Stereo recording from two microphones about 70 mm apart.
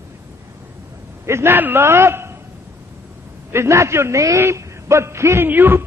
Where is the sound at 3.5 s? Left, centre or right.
Right.